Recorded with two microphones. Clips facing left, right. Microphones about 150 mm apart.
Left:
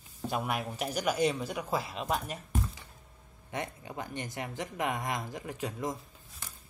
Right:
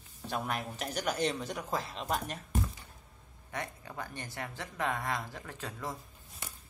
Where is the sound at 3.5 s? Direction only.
20° left (ahead or behind).